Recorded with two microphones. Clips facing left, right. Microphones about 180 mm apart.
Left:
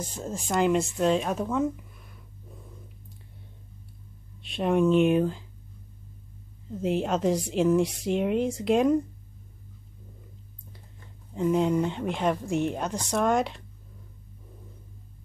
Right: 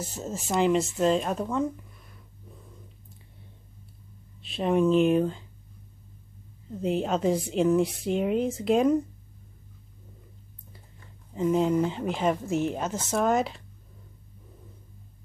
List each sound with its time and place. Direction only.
0.0 s a woman's voice: 5° right (ahead or behind)
4.4 s speech: centre (ahead or behind)
6.7 s a woman's voice: centre (ahead or behind)
11.3 s a woman's voice: centre (ahead or behind)